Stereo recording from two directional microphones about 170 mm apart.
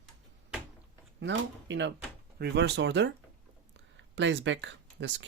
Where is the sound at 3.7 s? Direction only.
90° right.